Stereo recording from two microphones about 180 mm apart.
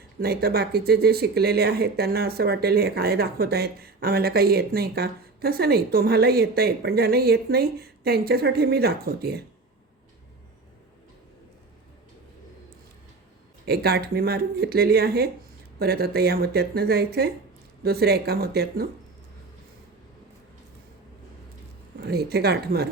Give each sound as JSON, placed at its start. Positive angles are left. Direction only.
{"t": 0.2, "sound": "speech", "side_deg": -60}
{"t": 13.7, "sound": "speech", "side_deg": -60}
{"t": 22.0, "sound": "speech", "side_deg": -60}